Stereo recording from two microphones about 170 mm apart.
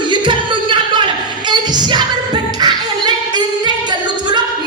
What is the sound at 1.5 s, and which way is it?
Music, 25° right (ahead or behind).